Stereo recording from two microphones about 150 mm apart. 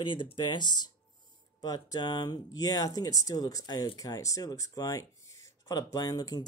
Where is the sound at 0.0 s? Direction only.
30° left (ahead or behind).